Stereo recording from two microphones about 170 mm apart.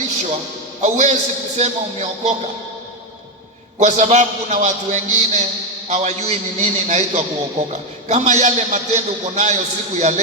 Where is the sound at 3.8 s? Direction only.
45° right (ahead or behind).